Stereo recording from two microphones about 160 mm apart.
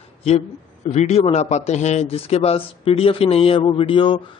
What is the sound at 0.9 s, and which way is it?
A man's voice, 45° left (ahead or behind).